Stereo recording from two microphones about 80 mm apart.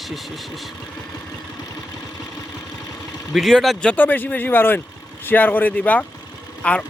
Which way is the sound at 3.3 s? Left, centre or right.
Centre.